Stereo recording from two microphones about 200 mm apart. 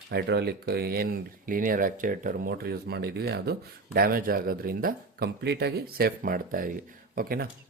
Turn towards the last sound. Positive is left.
turn(degrees=-45)  # may be behind; listen again after turning